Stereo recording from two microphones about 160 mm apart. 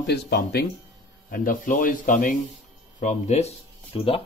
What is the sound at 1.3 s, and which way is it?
Speech, 60° left (ahead or behind).